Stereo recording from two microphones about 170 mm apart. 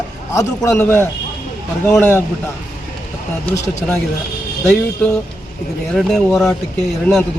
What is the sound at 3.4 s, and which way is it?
Speech, 15° left (ahead or behind).